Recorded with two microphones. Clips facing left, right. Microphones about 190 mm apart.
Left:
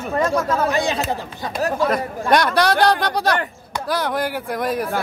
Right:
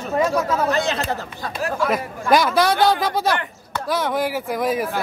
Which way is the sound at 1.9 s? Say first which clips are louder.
Even; centre (ahead or behind).